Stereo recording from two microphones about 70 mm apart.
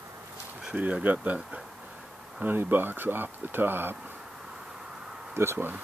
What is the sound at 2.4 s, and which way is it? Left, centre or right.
Speech, right.